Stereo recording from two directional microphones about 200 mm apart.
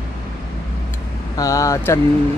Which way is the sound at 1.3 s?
15° left (ahead or behind).